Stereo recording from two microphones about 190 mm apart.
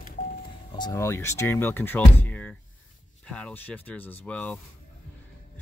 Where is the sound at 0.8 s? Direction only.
15° left (ahead or behind).